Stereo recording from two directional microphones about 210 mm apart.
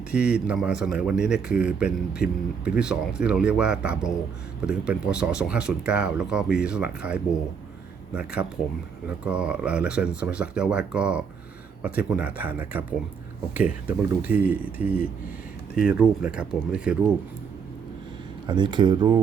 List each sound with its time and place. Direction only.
0.1 s a man's voice: 5° right (ahead or behind)
18.4 s speech: 20° right (ahead or behind)